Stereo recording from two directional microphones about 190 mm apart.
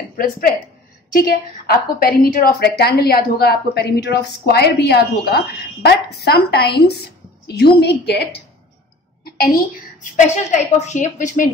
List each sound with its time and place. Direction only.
1.1 s a woman's voice: 50° left (ahead or behind)
9.2 s a sound: 55° left (ahead or behind)
10.0 s a woman's voice: 40° left (ahead or behind)